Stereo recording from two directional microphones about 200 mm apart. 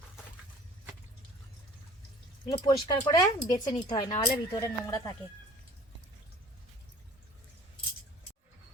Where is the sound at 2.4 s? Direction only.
20° left (ahead or behind).